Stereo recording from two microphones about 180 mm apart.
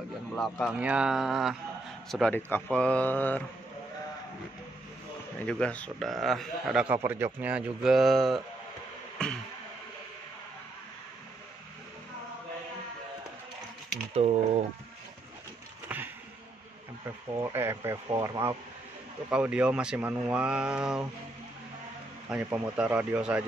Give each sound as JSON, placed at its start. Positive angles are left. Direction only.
{"t": 0.4, "sound": "speech", "side_deg": 0}
{"t": 5.5, "sound": "speech", "side_deg": 5}
{"t": 7.0, "sound": "a man's voice", "side_deg": -15}
{"t": 14.1, "sound": "mechanisms", "side_deg": -35}
{"t": 15.9, "sound": "a sound", "side_deg": -10}
{"t": 17.4, "sound": "a man's voice", "side_deg": -15}
{"t": 19.3, "sound": "speech", "side_deg": -5}
{"t": 22.3, "sound": "a man's voice", "side_deg": -5}